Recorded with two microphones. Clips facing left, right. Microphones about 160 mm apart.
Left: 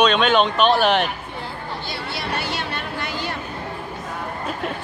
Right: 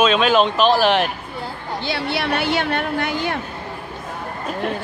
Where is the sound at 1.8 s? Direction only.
75° right (ahead or behind); by 3.4 s 55° right (ahead or behind).